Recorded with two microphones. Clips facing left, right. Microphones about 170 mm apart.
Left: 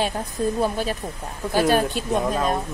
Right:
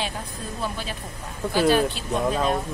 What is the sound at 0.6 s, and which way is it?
Speech, 45° left (ahead or behind).